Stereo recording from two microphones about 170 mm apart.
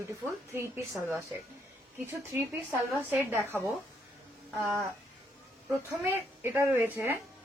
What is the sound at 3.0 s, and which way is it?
Speech, 10° right (ahead or behind).